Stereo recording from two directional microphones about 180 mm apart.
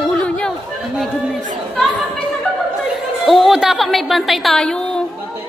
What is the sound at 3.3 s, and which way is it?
A woman's voice, centre (ahead or behind).